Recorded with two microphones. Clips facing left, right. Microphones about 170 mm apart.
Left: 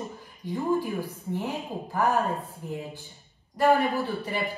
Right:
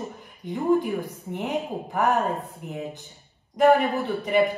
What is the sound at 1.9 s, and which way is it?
A woman's voice, 20° right (ahead or behind).